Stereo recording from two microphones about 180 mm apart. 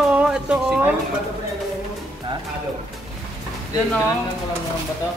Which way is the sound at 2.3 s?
30° right (ahead or behind).